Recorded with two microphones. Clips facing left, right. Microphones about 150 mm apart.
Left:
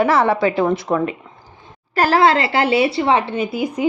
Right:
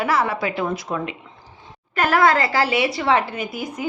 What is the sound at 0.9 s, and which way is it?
Speech, 70° left (ahead or behind).